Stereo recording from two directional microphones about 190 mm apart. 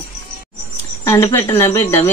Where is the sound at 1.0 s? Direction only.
15° left (ahead or behind).